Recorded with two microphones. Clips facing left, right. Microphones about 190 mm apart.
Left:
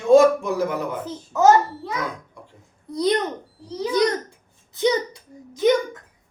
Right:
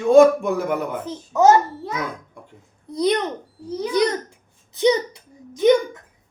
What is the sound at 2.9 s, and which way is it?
Speech, 20° right (ahead or behind).